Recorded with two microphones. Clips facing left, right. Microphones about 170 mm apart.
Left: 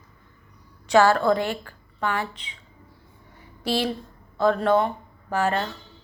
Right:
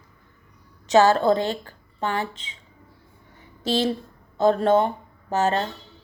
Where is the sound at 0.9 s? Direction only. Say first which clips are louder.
Right 1 dB; 20° right (ahead or behind).